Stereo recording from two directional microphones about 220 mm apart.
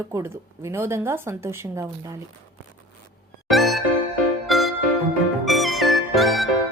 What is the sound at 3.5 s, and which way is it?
Music, centre (ahead or behind).